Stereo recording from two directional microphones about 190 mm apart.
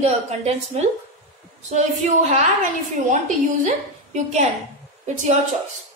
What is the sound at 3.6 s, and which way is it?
Speech, 40° right (ahead or behind).